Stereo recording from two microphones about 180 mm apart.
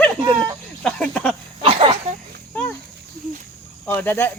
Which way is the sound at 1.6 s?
30° right (ahead or behind).